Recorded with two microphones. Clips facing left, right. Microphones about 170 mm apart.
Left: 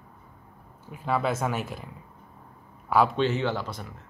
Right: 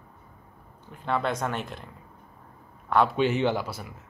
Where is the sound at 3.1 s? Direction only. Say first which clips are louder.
Right 2 dB; 15° right (ahead or behind).